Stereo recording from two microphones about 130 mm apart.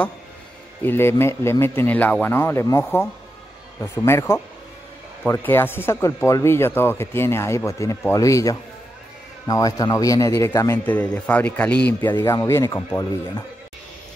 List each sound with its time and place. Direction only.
0.8 s speech: 20° left (ahead or behind)
10.9 s speech: 10° left (ahead or behind)